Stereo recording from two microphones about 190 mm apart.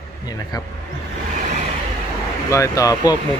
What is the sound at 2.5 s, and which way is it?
Speech, 15° left (ahead or behind).